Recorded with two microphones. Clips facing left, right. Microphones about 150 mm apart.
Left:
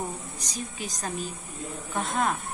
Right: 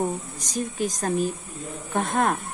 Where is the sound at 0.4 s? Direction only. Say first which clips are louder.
Right 9 dB; 45° right (ahead or behind).